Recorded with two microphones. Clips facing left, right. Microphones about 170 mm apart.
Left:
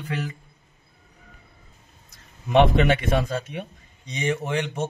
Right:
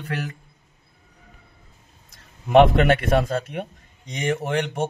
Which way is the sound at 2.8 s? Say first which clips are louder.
Right 2 dB; 55° right (ahead or behind).